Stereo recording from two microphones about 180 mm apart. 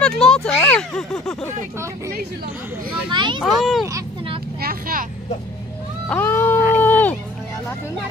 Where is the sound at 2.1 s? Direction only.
55° right (ahead or behind).